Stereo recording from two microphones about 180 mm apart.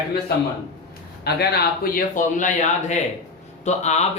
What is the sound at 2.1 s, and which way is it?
Speech, 45° left (ahead or behind).